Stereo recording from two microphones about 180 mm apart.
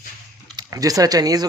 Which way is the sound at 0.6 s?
20° right (ahead or behind).